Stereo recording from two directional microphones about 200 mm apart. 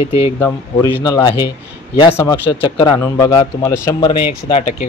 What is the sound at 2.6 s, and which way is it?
A man's voice, 25° left (ahead or behind).